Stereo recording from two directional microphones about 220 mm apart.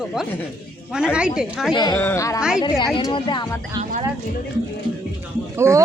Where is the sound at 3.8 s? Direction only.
20° right (ahead or behind).